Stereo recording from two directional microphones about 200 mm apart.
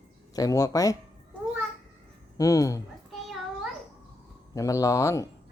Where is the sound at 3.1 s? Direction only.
Centre (ahead or behind).